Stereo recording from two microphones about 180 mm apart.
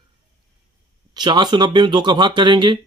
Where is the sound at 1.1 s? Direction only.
25° right (ahead or behind).